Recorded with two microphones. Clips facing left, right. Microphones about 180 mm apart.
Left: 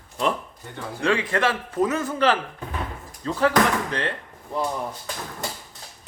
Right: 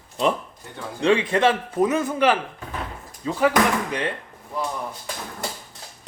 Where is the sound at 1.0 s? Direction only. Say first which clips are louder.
Right 4 dB; 20° right (ahead or behind).